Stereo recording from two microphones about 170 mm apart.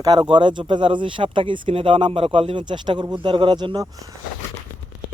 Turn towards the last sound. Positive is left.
turn(degrees=-25)  # may be behind; listen again after turning